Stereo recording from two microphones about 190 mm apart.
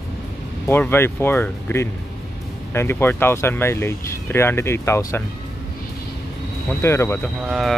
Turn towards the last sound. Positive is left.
turn(degrees=0)  # may be behind; listen again after turning